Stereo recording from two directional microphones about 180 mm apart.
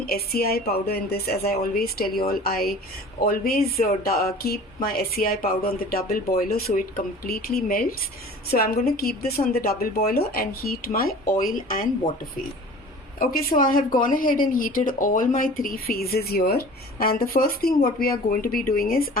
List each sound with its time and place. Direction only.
0.1 s a woman's voice: 60° left (ahead or behind)
13.1 s a woman's voice: 55° left (ahead or behind)